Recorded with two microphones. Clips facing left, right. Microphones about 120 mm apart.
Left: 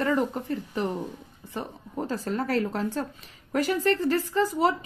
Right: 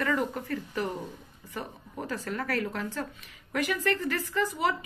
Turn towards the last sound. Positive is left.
turn(degrees=35)  # may be behind; listen again after turning